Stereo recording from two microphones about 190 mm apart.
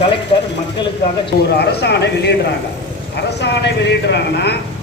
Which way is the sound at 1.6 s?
60° left (ahead or behind).